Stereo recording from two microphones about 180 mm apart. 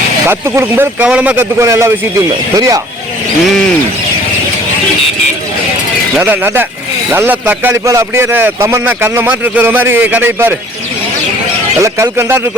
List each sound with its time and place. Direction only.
0.3 s speech: 15° right (ahead or behind)
6.1 s speech: 10° right (ahead or behind)
11.8 s speech: 15° right (ahead or behind)